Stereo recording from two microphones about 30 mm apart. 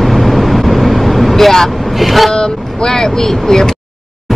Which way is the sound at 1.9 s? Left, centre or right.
Centre.